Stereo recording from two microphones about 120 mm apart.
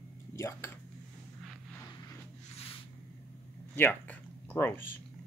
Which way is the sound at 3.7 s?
15° left (ahead or behind).